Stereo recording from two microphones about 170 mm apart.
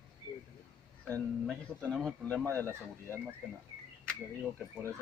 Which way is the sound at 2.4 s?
15° right (ahead or behind).